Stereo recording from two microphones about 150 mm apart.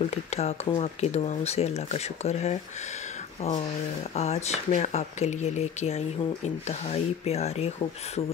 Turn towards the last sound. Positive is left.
turn(degrees=45)  # may be behind; listen again after turning